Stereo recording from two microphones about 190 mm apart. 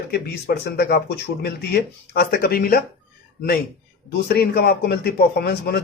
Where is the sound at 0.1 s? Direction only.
55° left (ahead or behind).